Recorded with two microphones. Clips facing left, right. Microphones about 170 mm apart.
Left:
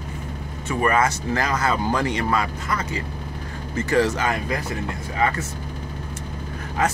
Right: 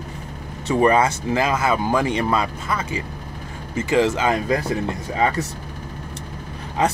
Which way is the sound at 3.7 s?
20° right (ahead or behind).